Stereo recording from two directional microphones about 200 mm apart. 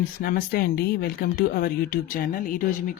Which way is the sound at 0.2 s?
50° left (ahead or behind).